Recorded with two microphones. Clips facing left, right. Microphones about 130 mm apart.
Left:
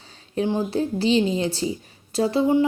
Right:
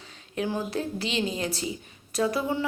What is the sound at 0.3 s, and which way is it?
Speech, 25° left (ahead or behind).